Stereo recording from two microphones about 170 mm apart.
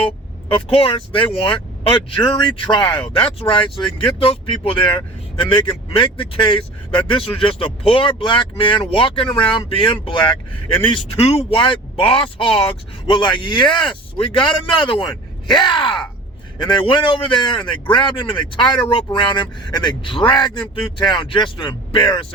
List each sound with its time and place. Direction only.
0.5 s speech: 35° left (ahead or behind)
2.6 s a man's voice: 25° left (ahead or behind)